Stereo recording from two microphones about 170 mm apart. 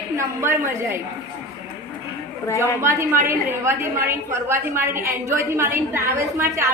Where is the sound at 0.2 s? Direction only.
15° right (ahead or behind).